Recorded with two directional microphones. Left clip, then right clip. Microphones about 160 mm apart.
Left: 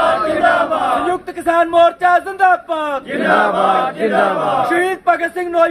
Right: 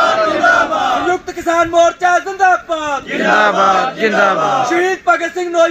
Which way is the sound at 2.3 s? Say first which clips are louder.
Right 1 dB; 15° left (ahead or behind).